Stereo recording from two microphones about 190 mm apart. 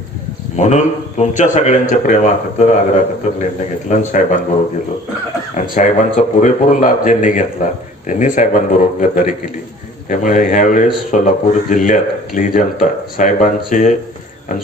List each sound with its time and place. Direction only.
0.6 s a man's voice: 40° left (ahead or behind)
5.8 s a man's voice: 40° left (ahead or behind)